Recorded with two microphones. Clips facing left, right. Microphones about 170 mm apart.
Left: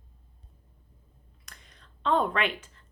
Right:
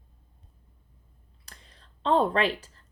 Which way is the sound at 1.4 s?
30° right (ahead or behind).